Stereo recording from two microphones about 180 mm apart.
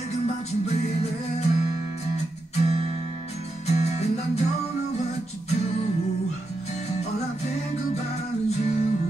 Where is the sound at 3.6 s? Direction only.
35° left (ahead or behind).